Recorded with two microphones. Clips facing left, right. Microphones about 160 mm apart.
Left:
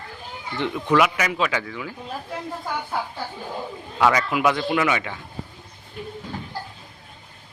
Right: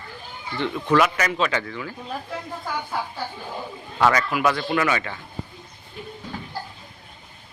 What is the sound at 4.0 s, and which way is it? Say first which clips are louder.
Speech: even; 15° left (ahead or behind).